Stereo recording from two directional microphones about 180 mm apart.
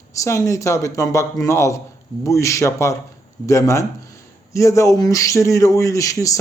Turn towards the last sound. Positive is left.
turn(degrees=20)  # may be behind; listen again after turning